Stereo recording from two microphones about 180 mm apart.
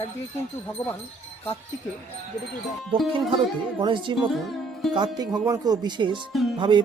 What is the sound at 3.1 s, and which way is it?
Speech, 25° right (ahead or behind).